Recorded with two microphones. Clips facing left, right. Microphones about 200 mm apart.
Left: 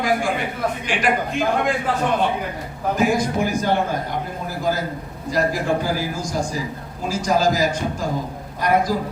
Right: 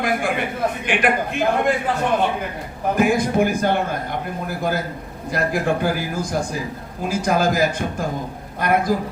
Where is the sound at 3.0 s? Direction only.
55° right (ahead or behind).